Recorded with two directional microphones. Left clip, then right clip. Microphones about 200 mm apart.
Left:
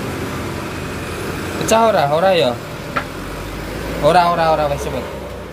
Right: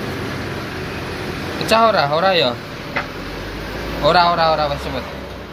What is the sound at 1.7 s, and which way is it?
Speech, 15° left (ahead or behind).